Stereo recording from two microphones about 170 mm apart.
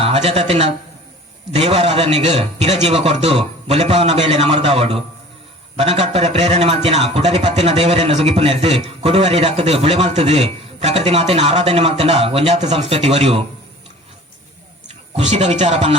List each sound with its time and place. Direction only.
0.0 s speech: 35° right (ahead or behind)
15.1 s speech: 40° right (ahead or behind)